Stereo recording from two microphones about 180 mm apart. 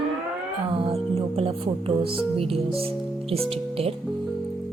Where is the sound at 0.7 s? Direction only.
30° right (ahead or behind).